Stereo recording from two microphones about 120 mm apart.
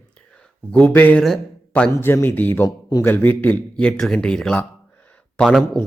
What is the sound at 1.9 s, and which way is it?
Speech, 20° left (ahead or behind).